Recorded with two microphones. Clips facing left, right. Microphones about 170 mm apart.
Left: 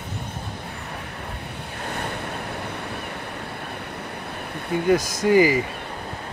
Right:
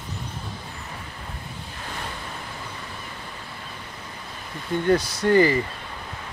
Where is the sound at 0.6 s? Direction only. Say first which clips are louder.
Left 4 dB; 65° left (ahead or behind).